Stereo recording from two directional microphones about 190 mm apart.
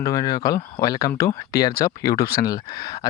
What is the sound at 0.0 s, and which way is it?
Speech, 20° left (ahead or behind).